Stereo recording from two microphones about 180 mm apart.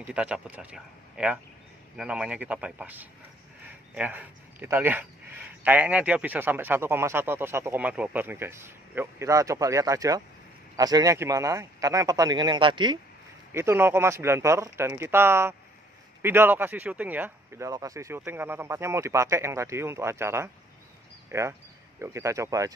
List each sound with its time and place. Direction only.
0.0 s speech: 5° right (ahead or behind); by 13.0 s 25° right (ahead or behind)
13.5 s speech: 15° right (ahead or behind)